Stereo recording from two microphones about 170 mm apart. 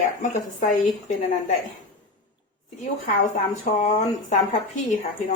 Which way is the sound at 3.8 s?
45° left (ahead or behind).